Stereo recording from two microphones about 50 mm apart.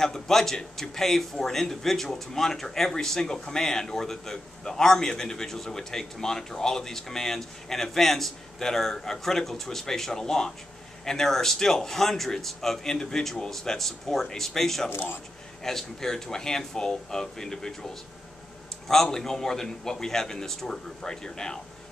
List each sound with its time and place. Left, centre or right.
0.0 s a man's voice: centre
14.9 s a man's voice: left
15.6 s a man's voice: centre
19.1 s a man's voice: centre